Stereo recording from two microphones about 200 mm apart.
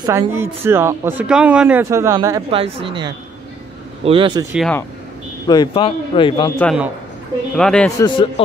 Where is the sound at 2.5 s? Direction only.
30° right (ahead or behind).